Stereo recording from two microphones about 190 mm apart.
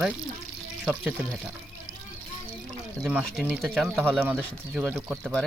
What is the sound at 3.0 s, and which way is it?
Speech, centre (ahead or behind).